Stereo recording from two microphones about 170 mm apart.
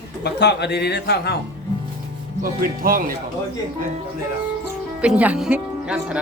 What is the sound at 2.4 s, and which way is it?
Speech, 55° right (ahead or behind).